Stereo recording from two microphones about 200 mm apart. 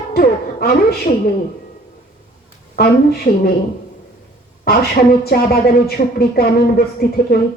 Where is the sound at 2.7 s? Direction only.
50° left (ahead or behind).